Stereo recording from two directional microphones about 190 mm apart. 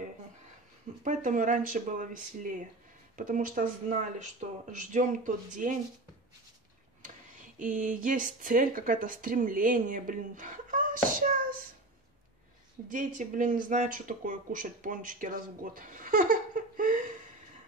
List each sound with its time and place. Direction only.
1.0 s speech: 45° right (ahead or behind)
7.5 s speech: 45° right (ahead or behind)
12.9 s speech: 45° right (ahead or behind)